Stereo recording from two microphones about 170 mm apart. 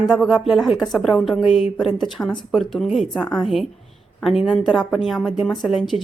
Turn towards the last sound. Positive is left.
turn(degrees=0)  # may be behind; listen again after turning